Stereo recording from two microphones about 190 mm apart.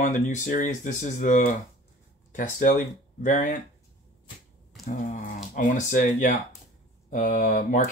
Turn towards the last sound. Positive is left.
turn(degrees=40)  # may be behind; listen again after turning